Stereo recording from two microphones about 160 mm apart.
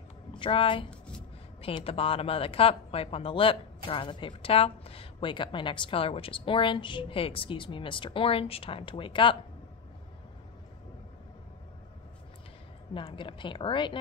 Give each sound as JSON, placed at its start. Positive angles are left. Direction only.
{"t": 0.4, "sound": "a woman's voice", "side_deg": 30}
{"t": 0.8, "sound": "writing", "side_deg": 5}
{"t": 1.6, "sound": "a woman's voice", "side_deg": 35}
{"t": 12.9, "sound": "a woman's voice", "side_deg": 30}